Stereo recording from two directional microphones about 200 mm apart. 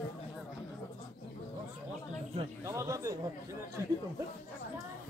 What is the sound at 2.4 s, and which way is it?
Speech, 15° right (ahead or behind).